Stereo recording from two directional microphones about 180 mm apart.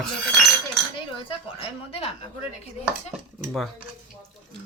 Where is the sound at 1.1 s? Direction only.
30° left (ahead or behind).